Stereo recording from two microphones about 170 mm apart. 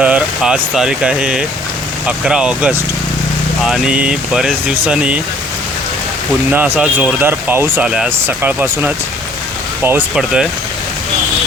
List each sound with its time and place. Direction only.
0.0 s speech: 5° right (ahead or behind)
6.5 s speech: 10° right (ahead or behind)